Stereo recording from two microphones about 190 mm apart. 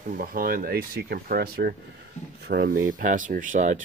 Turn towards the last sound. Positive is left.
turn(degrees=-40)  # may be behind; listen again after turning